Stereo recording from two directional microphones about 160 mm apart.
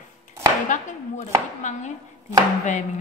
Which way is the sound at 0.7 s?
50° left (ahead or behind).